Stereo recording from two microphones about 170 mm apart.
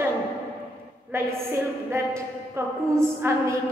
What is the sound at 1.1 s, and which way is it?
A woman's voice, 15° right (ahead or behind).